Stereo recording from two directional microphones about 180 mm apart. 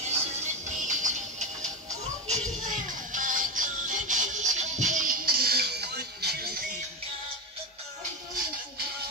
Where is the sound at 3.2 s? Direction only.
50° right (ahead or behind); by 6.6 s 65° right (ahead or behind).